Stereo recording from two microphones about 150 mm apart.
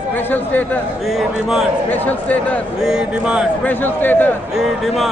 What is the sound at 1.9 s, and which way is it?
Speech, 10° left (ahead or behind).